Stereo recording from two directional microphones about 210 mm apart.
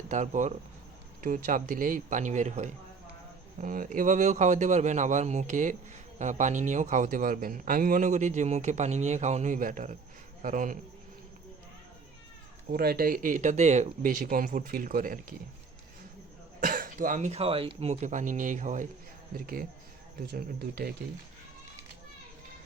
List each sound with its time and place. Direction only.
0.1 s speech: 35° right (ahead or behind)
12.7 s speech: 45° right (ahead or behind)
16.6 s speech: 40° right (ahead or behind)
20.2 s speech: 50° right (ahead or behind)